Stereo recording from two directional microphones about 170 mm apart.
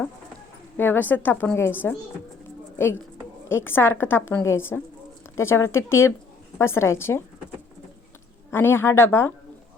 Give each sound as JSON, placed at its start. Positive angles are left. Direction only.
{"t": 0.8, "sound": "a woman's voice", "side_deg": 10}
{"t": 3.5, "sound": "a woman's voice", "side_deg": 15}
{"t": 8.4, "sound": "a woman's voice", "side_deg": 15}